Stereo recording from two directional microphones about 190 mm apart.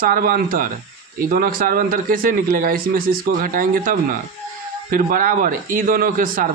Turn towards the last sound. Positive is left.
turn(degrees=-45)  # may be behind; listen again after turning